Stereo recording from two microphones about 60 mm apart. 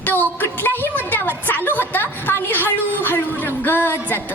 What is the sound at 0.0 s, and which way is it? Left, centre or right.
Speech, left.